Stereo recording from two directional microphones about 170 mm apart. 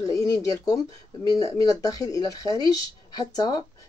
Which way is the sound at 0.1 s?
20° left (ahead or behind).